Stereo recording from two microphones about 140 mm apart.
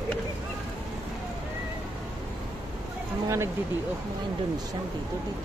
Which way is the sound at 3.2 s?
20° right (ahead or behind).